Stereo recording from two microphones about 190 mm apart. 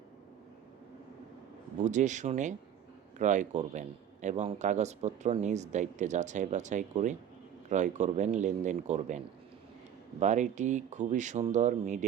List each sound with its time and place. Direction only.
1.8 s a man's voice: 40° right (ahead or behind)